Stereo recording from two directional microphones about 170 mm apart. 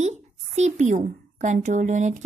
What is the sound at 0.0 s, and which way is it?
Speech, 40° right (ahead or behind).